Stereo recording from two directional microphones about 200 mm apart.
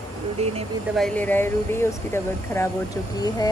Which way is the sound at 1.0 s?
5° left (ahead or behind).